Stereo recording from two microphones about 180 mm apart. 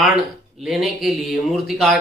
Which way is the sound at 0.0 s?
Centre (ahead or behind).